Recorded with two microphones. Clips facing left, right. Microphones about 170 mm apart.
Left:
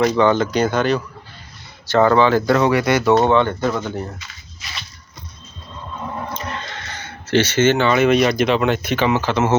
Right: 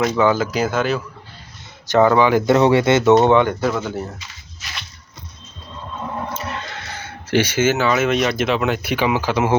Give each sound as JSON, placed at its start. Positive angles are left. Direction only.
{"t": 0.2, "sound": "speech", "side_deg": -5}
{"t": 1.9, "sound": "speech", "side_deg": -15}
{"t": 6.3, "sound": "speech", "side_deg": -5}